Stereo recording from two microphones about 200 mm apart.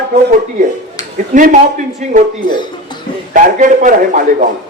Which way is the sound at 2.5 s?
20° left (ahead or behind).